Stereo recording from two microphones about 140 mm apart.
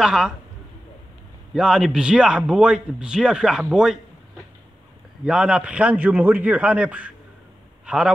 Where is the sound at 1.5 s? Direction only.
5° right (ahead or behind).